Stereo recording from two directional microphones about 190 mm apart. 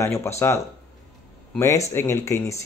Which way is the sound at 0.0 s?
15° left (ahead or behind).